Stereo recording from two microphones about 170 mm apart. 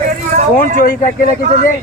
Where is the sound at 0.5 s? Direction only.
55° left (ahead or behind).